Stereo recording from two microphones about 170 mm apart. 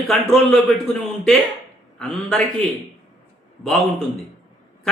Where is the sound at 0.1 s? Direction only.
5° left (ahead or behind).